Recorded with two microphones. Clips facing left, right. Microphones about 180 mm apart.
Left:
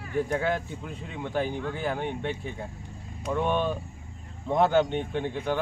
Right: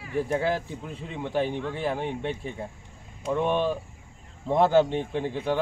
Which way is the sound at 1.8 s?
Centre (ahead or behind).